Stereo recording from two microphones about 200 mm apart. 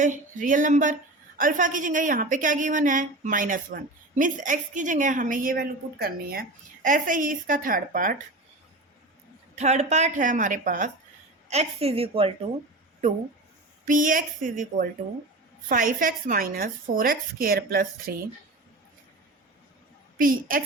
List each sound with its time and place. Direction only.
0.0 s a woman's voice: 40° right (ahead or behind)
9.6 s a woman's voice: 35° right (ahead or behind)
13.8 s a woman's voice: 40° right (ahead or behind)
20.1 s speech: 45° right (ahead or behind)